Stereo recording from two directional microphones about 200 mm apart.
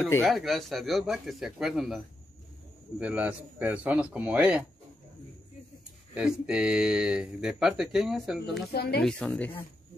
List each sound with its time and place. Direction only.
0.2 s speech: centre (ahead or behind)
3.0 s a man's voice: 5° right (ahead or behind)
6.1 s speech: 5° right (ahead or behind)
8.7 s speech: 55° left (ahead or behind)
9.0 s speech: 5° left (ahead or behind)